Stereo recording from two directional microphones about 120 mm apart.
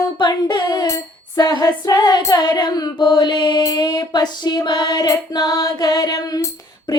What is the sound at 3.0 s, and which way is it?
Female singing, 35° left (ahead or behind).